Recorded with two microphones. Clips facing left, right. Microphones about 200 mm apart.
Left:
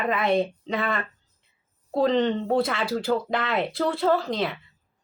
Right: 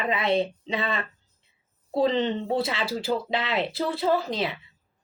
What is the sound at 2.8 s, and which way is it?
Speech, 5° right (ahead or behind).